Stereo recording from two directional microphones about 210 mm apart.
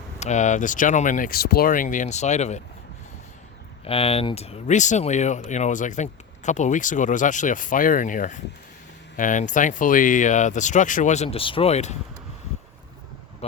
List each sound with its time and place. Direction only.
0.2 s speech: 35° left (ahead or behind)
3.8 s speech: 25° left (ahead or behind)